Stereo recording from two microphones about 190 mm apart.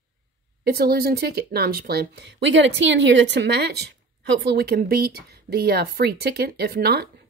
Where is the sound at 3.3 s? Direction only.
65° right (ahead or behind).